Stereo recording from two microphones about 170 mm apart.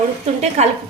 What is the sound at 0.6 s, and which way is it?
Speech, 40° right (ahead or behind).